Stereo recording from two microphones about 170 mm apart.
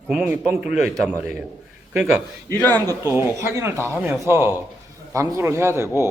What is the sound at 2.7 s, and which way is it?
Speech, 20° right (ahead or behind).